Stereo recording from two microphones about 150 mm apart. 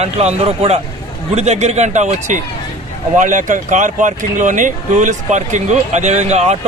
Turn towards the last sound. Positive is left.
turn(degrees=-45)  # may be behind; listen again after turning